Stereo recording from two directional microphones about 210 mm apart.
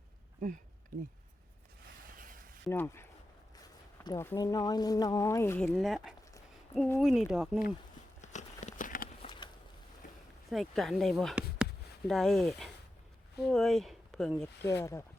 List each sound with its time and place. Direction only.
2.6 s speech: 10° left (ahead or behind)
6.7 s speech: 10° left (ahead or behind)
7.0 s speech: centre (ahead or behind)
8.2 s a sound: 35° left (ahead or behind)
9.2 s a sound: 20° left (ahead or behind)
10.5 s speech: centre (ahead or behind)
14.6 s speech: 15° left (ahead or behind)